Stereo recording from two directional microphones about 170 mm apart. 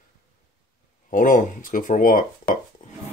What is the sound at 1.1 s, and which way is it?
Speech, 50° left (ahead or behind).